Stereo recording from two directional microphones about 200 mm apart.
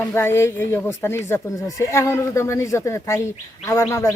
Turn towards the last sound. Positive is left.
turn(degrees=15)  # may be behind; listen again after turning